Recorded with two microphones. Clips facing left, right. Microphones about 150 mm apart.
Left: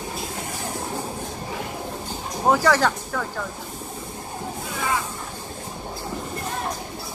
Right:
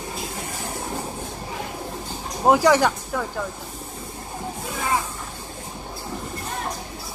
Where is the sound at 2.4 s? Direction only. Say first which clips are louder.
Right 2 dB; 15° right (ahead or behind).